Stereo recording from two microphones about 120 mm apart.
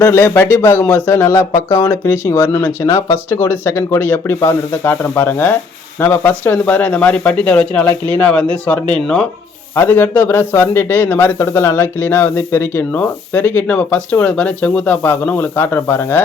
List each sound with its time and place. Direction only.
0.0 s a man's voice: 20° left (ahead or behind)